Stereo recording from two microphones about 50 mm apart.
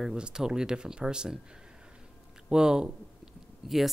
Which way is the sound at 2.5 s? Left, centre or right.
Centre.